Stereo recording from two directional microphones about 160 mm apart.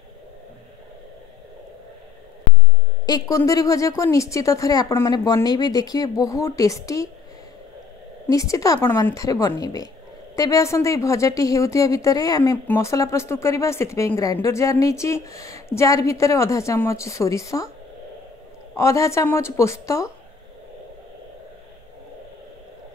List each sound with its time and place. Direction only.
3.1 s speech: 20° left (ahead or behind)
8.3 s speech: 20° left (ahead or behind)
18.8 s speech: 20° left (ahead or behind)